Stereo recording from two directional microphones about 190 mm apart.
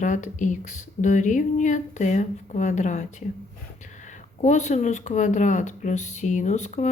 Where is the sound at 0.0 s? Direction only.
40° left (ahead or behind).